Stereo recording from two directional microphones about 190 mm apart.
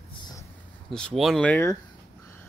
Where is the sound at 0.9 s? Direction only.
5° left (ahead or behind).